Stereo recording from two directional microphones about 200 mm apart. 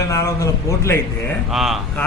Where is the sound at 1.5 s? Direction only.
Centre (ahead or behind).